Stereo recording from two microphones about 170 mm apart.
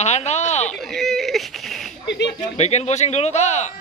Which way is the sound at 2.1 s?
90° left.